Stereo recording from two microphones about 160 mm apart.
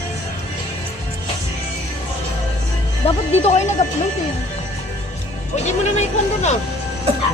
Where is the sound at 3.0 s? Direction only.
45° left (ahead or behind).